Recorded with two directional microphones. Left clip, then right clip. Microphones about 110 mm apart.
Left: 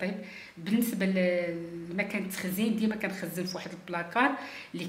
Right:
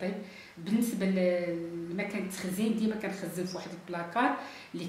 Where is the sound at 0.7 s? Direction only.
25° left (ahead or behind).